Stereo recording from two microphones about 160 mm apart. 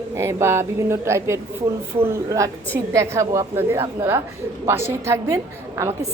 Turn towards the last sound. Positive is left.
turn(degrees=-15)  # may be behind; listen again after turning